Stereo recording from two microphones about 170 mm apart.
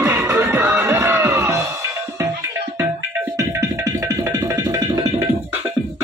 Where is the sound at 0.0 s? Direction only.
15° right (ahead or behind).